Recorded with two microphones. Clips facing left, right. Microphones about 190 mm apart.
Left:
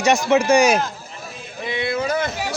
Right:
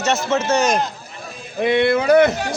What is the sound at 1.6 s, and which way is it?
Speech, 65° right (ahead or behind).